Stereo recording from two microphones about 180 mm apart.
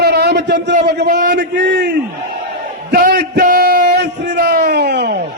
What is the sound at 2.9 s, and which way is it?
Speech, 60° right (ahead or behind).